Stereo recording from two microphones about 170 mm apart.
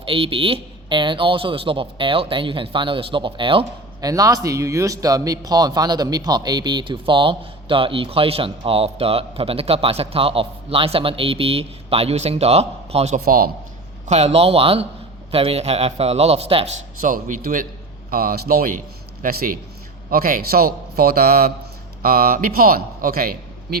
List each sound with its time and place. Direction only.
0.0 s speech: 30° right (ahead or behind)
4.1 s speech: 20° right (ahead or behind); by 13.2 s 40° right (ahead or behind)
13.2 s a man's voice: 60° right (ahead or behind)
14.1 s speech: 40° right (ahead or behind)
17.0 s a man's voice: 50° right (ahead or behind)